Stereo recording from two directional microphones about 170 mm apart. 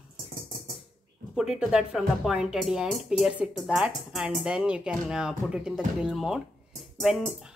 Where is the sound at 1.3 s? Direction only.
Centre (ahead or behind).